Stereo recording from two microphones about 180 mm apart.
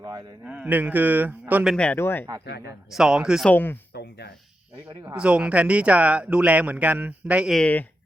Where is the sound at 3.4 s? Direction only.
10° left (ahead or behind).